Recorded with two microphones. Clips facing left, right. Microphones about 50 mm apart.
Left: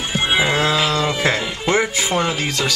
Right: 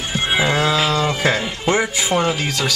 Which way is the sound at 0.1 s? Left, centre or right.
Centre.